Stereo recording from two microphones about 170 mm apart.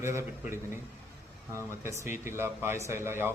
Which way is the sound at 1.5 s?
15° right (ahead or behind).